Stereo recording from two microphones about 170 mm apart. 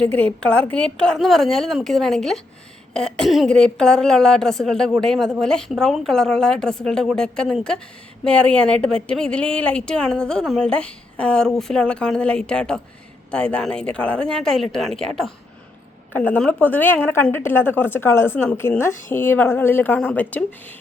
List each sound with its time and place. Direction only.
0.0 s a woman's voice: 10° left (ahead or behind)
16.1 s a woman's voice: 10° left (ahead or behind)
18.9 s speech: 50° left (ahead or behind)
19.1 s a woman's voice: 15° left (ahead or behind)